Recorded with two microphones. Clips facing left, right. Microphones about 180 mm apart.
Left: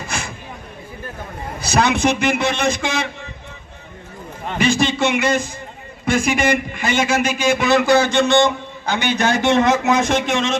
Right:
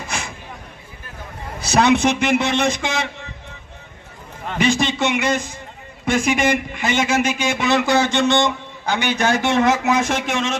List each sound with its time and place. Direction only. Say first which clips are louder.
0.1 s a sound: left 1 dB; 20° right (ahead or behind)
1.6 s speech: right 1 dB; 25° right (ahead or behind)
4.5 s a man's voice: left 1 dB; 20° right (ahead or behind)